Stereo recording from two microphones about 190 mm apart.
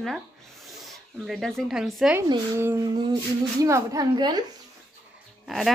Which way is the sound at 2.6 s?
15° right (ahead or behind).